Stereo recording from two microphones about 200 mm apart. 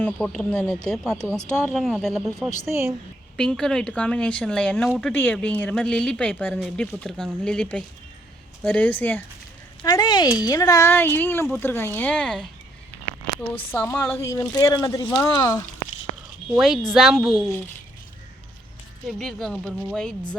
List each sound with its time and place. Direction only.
0.0 s a woman's voice: 5° left (ahead or behind)
9.8 s a woman's voice: 20° left (ahead or behind); by 12.5 s 5° left (ahead or behind)
13.6 s speech: 10° left (ahead or behind)
16.6 s a woman's voice: centre (ahead or behind)
19.0 s a woman's voice: centre (ahead or behind)